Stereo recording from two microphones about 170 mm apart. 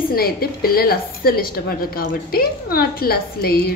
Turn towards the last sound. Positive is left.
turn(degrees=65)  # may be behind; listen again after turning